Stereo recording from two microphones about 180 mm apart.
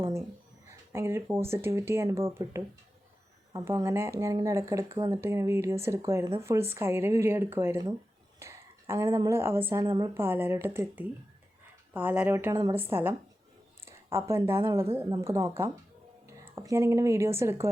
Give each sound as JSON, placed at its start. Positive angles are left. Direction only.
{"t": 0.9, "sound": "speech", "side_deg": -15}